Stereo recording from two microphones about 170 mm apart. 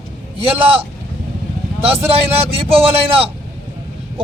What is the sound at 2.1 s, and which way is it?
Speech, 35° right (ahead or behind).